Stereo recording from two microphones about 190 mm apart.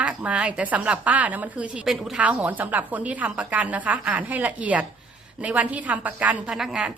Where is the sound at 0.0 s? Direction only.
5° right (ahead or behind).